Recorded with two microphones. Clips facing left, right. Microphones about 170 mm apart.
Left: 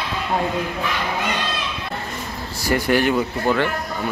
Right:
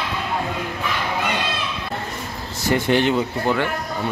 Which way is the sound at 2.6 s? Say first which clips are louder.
Even; 25° right (ahead or behind).